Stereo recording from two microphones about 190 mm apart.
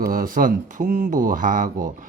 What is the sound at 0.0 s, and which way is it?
Speech, 50° right (ahead or behind).